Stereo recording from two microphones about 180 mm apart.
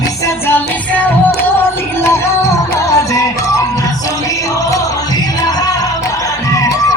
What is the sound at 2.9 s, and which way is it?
Music, 15° left (ahead or behind).